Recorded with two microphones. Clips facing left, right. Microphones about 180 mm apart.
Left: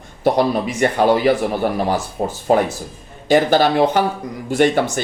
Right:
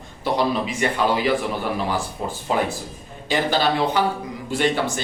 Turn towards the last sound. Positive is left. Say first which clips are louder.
# left 6 dB
turn(degrees=45)  # may be behind; listen again after turning